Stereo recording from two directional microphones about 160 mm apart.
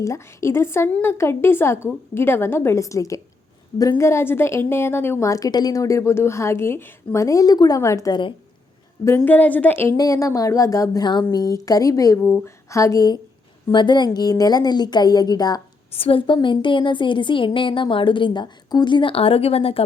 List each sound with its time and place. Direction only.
0.0 s a woman's voice: 20° left (ahead or behind)
15.9 s a woman's voice: 35° left (ahead or behind)